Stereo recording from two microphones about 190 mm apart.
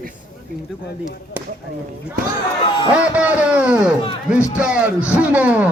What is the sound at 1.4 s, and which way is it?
Speech, 10° right (ahead or behind).